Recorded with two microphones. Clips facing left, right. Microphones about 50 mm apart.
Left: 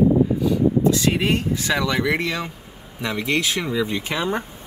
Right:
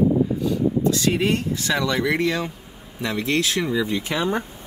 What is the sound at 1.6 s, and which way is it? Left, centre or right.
Speech, left.